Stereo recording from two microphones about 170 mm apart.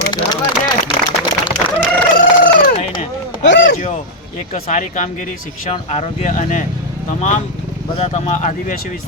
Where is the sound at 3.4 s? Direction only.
90° left.